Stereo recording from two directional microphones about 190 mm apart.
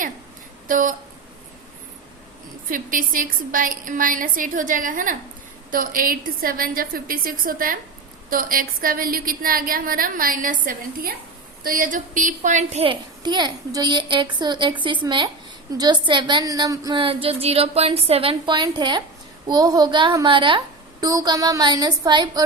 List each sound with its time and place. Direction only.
0.7 s a woman's voice: 45° right (ahead or behind)
2.6 s a woman's voice: 45° right (ahead or behind); by 22.4 s 20° right (ahead or behind)